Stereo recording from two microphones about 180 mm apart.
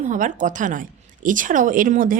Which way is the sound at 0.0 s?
45° right (ahead or behind).